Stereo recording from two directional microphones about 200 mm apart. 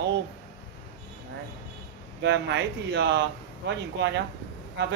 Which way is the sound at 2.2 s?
60° right (ahead or behind).